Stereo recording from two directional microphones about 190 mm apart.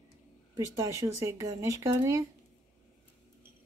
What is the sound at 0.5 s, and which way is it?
Speech, 15° right (ahead or behind).